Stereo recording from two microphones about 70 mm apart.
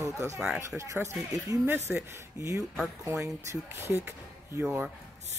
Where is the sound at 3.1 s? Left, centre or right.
Right.